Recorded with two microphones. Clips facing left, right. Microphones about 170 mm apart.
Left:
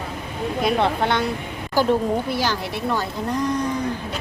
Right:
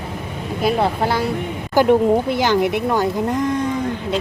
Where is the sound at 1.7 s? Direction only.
20° right (ahead or behind).